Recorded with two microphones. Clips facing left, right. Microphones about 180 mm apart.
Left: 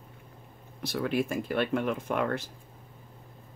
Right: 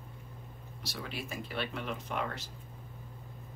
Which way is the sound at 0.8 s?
55° left (ahead or behind).